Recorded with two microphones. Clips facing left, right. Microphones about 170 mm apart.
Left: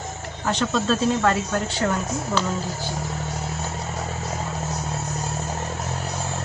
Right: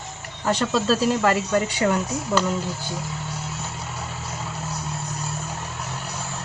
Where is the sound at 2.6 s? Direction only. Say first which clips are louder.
Left 1 dB; 45° left (ahead or behind).